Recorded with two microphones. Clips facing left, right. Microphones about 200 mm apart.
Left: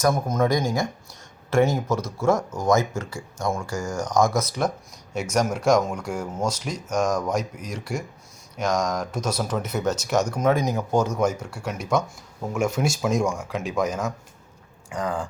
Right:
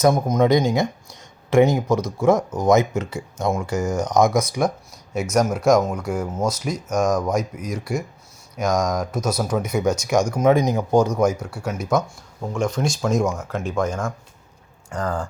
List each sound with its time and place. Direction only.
0.0 s speech: 20° right (ahead or behind)
12.4 s speech: 5° left (ahead or behind)